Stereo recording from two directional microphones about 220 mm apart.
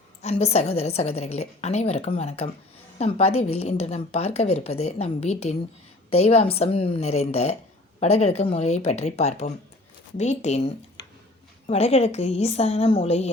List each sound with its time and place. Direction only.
0.2 s a woman's voice: 30° left (ahead or behind)
11.6 s a woman's voice: 30° left (ahead or behind)